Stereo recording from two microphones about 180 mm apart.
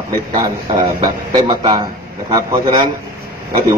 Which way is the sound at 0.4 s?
20° right (ahead or behind).